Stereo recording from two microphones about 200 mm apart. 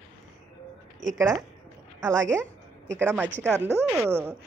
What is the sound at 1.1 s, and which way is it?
A woman's voice, 15° right (ahead or behind).